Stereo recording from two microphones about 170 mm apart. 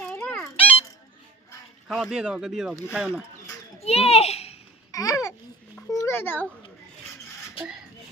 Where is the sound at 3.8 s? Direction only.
35° left (ahead or behind).